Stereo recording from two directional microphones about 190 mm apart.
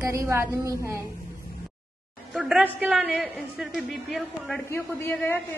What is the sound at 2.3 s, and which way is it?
A woman's voice, centre (ahead or behind).